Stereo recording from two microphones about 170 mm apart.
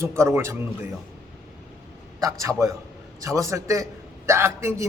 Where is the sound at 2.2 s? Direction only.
20° right (ahead or behind).